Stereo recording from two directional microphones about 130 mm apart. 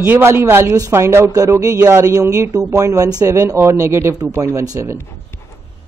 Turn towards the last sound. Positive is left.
turn(degrees=-25)  # may be behind; listen again after turning